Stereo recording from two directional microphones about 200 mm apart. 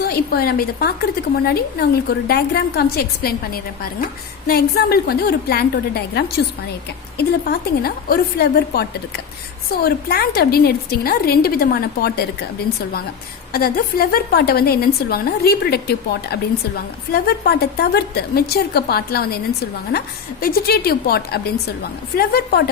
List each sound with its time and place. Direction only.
0.0 s a woman's voice: 50° left (ahead or behind)
13.5 s a woman's voice: 45° left (ahead or behind)
20.4 s a woman's voice: 50° left (ahead or behind)